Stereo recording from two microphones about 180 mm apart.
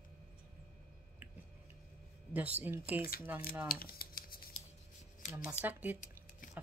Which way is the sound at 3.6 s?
55° left (ahead or behind).